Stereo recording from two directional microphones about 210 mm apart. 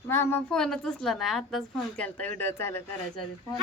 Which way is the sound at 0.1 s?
10° left (ahead or behind).